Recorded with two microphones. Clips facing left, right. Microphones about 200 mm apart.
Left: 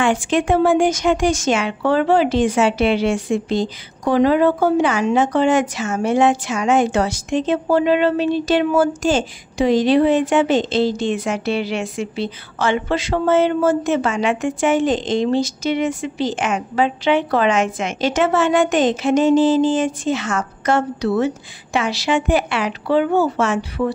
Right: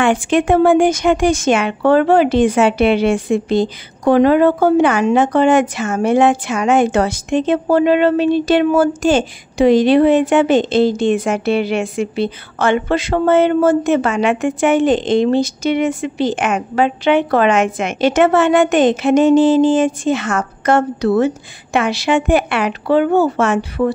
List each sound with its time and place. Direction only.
0.0 s speech: 60° right (ahead or behind)